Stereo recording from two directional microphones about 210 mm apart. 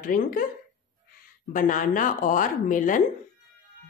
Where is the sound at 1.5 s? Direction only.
40° left (ahead or behind).